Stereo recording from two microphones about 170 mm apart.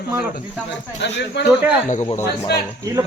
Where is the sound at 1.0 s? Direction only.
85° left.